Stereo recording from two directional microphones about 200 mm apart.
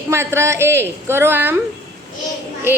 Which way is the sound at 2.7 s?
10° right (ahead or behind).